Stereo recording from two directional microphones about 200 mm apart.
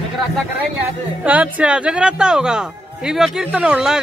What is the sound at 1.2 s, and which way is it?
Speech, 5° right (ahead or behind).